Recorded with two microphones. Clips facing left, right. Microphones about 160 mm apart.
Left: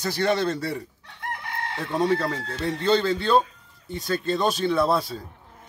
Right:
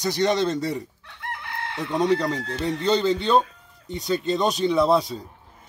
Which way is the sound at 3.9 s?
Centre (ahead or behind).